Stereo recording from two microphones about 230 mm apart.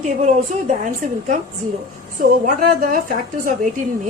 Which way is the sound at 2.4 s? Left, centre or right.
Right.